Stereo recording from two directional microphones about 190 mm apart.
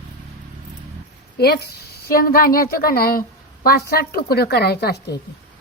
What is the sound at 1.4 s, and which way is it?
A woman's voice, 55° left (ahead or behind).